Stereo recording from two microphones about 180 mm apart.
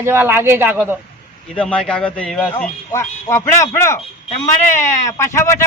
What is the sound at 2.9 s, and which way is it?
Speech, 15° left (ahead or behind).